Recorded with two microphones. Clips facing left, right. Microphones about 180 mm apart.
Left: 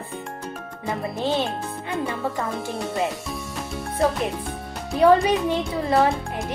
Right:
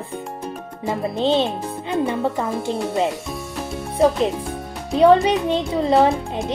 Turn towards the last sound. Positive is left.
turn(degrees=-20)  # may be behind; listen again after turning